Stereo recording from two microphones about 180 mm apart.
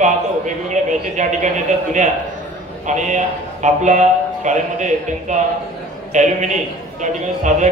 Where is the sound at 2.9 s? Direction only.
40° right (ahead or behind).